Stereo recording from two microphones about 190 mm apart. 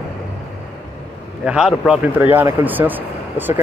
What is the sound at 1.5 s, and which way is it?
A man's voice, 5° right (ahead or behind).